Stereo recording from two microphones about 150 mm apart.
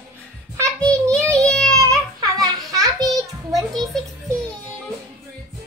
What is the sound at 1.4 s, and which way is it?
Child singing, 5° left (ahead or behind).